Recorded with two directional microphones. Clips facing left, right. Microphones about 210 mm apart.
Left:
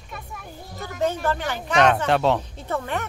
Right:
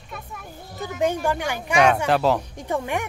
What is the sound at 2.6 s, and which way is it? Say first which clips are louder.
Speech: right 2 dB; 15° right (ahead or behind).